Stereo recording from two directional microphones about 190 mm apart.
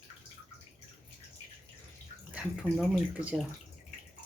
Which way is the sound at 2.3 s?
5° right (ahead or behind).